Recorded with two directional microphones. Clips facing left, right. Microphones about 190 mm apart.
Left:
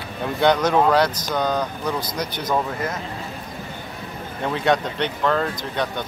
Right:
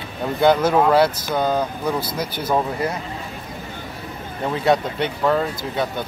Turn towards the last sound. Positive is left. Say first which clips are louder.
# right 2 dB
turn(degrees=-5)  # may be behind; listen again after turning